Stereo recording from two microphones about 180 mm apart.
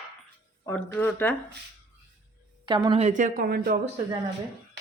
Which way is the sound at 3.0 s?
45° right (ahead or behind).